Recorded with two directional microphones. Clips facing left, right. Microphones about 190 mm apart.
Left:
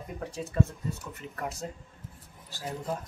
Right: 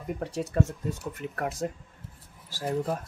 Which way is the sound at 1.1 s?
55° right (ahead or behind).